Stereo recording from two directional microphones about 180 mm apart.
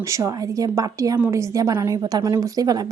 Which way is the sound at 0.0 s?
15° right (ahead or behind).